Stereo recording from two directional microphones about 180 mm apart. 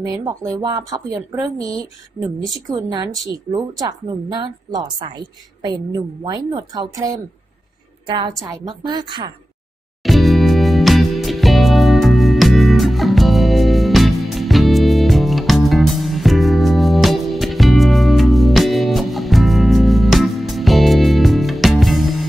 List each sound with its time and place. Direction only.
0.0 s a woman's voice: 20° right (ahead or behind)
8.5 s a woman's voice: 25° right (ahead or behind)
10.0 s music: centre (ahead or behind)